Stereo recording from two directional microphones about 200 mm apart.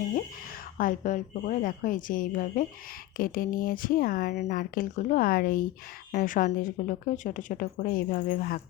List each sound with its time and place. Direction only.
0.8 s speech: 40° left (ahead or behind)